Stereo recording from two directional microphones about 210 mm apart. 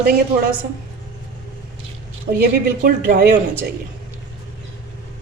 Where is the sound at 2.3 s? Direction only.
45° right (ahead or behind).